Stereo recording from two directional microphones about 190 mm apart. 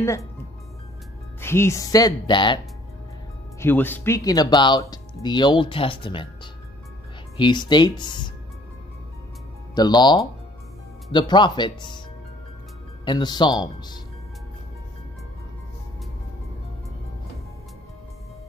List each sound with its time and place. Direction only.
0.0 s speech: 15° left (ahead or behind)
1.4 s speech: 15° left (ahead or behind)
3.5 s speech: 10° left (ahead or behind)
9.8 s speech: 20° left (ahead or behind)
13.0 s speech: 25° left (ahead or behind)